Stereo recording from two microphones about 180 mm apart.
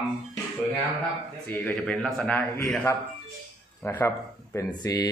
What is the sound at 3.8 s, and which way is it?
Speech, 10° left (ahead or behind).